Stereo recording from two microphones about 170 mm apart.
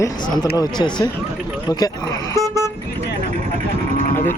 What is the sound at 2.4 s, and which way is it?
Vehicle, 20° right (ahead or behind).